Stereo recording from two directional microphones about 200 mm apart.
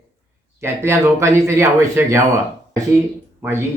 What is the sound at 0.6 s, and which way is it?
Speech, 15° right (ahead or behind).